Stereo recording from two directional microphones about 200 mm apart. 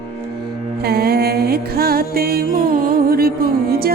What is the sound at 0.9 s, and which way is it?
Music, 50° right (ahead or behind).